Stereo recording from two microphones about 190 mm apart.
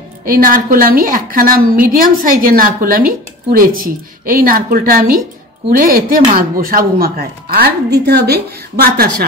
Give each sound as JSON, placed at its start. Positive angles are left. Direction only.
{"t": 0.2, "sound": "a woman's voice", "side_deg": -50}